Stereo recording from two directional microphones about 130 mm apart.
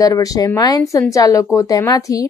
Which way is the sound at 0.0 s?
25° left (ahead or behind).